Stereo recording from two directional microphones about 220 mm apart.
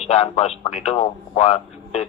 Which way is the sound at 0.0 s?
30° left (ahead or behind).